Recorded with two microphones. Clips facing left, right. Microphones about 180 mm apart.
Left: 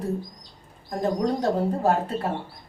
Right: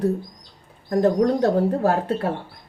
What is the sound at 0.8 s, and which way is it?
Speech, 65° right (ahead or behind).